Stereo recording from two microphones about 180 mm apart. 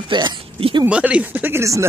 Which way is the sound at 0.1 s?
25° right (ahead or behind).